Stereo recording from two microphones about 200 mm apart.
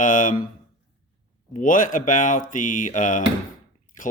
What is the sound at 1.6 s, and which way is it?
Speech, 40° left (ahead or behind).